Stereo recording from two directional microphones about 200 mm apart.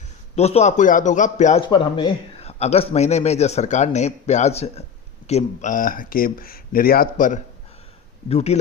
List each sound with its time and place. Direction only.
0.3 s a man's voice: 30° left (ahead or behind)
1.6 s a man's voice: 25° left (ahead or behind)